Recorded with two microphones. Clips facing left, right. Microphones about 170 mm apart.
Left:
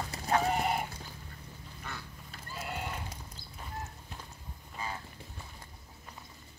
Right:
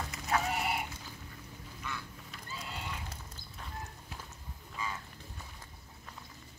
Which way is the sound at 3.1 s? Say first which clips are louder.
Left 1 dB; 10° left (ahead or behind).